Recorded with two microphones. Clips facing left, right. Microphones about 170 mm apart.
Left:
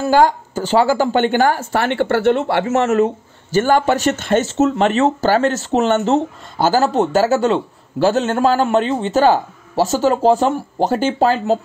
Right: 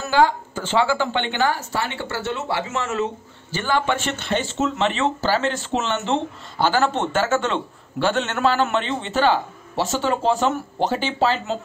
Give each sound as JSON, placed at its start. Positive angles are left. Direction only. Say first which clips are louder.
{"t": 0.1, "sound": "speech", "louder": "left 3 dB", "side_deg": 40}
{"t": 3.5, "sound": "speech", "louder": "left 8 dB", "side_deg": 45}